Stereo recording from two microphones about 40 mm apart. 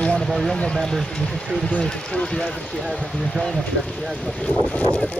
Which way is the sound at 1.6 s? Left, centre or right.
Left.